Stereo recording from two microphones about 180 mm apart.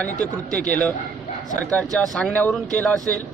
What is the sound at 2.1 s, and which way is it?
Speech, 5° left (ahead or behind).